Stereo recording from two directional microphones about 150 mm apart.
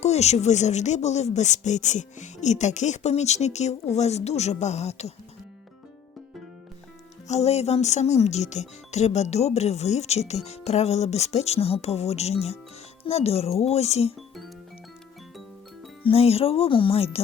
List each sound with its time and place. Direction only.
0.0 s speech: 45° left (ahead or behind)
7.3 s speech: 45° left (ahead or behind)
16.0 s speech: 45° left (ahead or behind)